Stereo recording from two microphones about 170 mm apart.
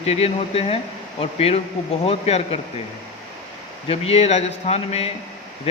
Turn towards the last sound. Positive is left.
turn(degrees=35)  # may be behind; listen again after turning